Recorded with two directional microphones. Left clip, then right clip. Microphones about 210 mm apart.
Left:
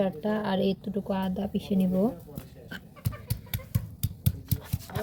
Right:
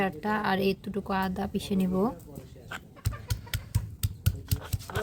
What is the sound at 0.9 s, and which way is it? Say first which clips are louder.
Speech: right 1 dB; 55° right (ahead or behind).